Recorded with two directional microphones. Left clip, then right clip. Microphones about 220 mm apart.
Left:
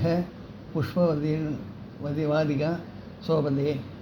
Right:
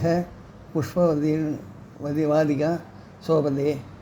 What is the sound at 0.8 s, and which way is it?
Speech, 45° right (ahead or behind).